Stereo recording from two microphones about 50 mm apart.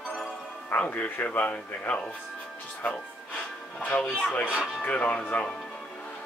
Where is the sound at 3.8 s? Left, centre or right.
Left.